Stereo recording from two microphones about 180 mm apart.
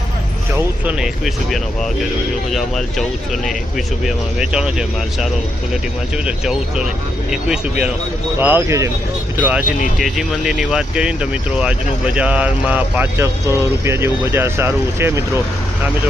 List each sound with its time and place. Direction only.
0.5 s speech: 5° right (ahead or behind)